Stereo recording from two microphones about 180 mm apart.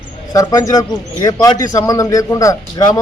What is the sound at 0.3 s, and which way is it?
A man's voice, 20° left (ahead or behind).